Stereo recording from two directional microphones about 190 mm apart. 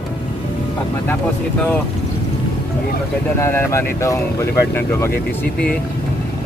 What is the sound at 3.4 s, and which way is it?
Speech, 15° left (ahead or behind).